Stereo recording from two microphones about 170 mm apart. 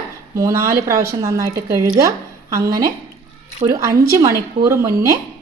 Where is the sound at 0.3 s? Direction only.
20° right (ahead or behind).